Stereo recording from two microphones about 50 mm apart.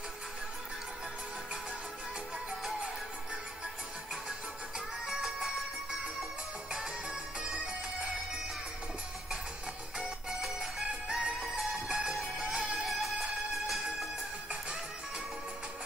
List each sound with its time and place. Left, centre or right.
4.7 s music: centre
10.4 s music: centre